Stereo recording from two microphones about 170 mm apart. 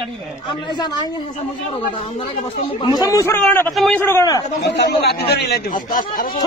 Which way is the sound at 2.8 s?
20° left (ahead or behind).